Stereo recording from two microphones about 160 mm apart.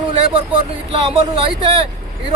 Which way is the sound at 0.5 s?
35° right (ahead or behind).